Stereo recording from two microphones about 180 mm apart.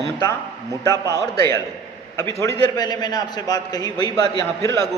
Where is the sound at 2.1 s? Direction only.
15° left (ahead or behind).